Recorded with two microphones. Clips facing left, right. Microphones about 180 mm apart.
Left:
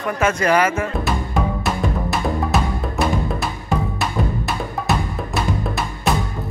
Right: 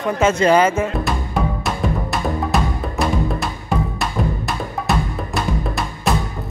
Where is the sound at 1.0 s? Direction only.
Centre (ahead or behind).